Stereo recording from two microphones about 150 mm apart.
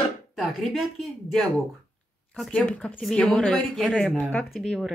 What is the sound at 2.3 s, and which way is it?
Speech, 5° left (ahead or behind).